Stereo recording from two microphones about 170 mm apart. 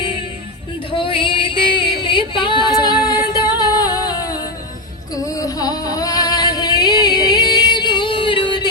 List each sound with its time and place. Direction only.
0.9 s music: 30° left (ahead or behind)